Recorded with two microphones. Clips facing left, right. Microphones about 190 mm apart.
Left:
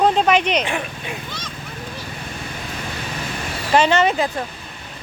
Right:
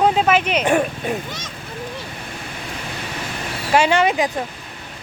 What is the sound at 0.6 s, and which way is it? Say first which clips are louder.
Speech: right 8 dB; 45° right (ahead or behind).